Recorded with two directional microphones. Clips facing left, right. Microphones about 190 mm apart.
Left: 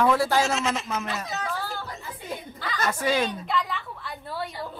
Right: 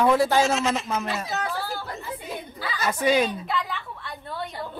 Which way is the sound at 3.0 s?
20° right (ahead or behind).